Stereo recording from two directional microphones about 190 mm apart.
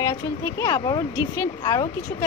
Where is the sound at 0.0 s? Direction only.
15° left (ahead or behind).